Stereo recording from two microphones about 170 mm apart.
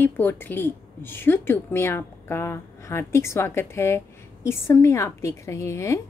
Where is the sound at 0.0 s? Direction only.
10° left (ahead or behind).